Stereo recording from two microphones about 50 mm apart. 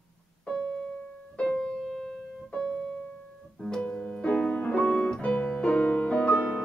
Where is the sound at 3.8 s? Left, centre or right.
Left.